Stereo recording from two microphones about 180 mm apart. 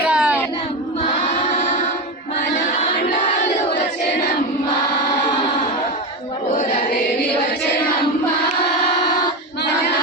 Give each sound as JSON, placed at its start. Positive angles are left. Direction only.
{"t": 0.1, "sound": "child singing", "side_deg": -5}
{"t": 1.5, "sound": "music", "side_deg": 45}
{"t": 2.8, "sound": "crowd", "side_deg": 45}